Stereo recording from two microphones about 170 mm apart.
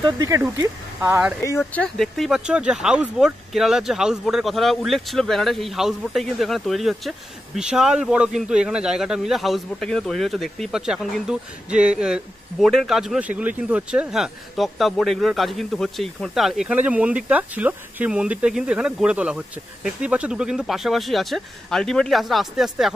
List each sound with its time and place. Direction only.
0.0 s speech: 20° right (ahead or behind)
1.4 s speech: 15° left (ahead or behind); by 22.9 s centre (ahead or behind)